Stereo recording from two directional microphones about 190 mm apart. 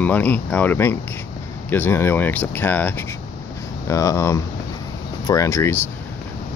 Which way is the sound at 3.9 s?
15° left (ahead or behind).